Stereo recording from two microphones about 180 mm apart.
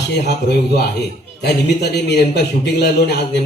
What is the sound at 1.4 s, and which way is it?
A man's voice, 65° left (ahead or behind).